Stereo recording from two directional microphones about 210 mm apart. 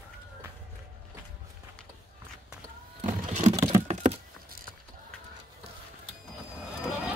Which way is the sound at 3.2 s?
35° right (ahead or behind).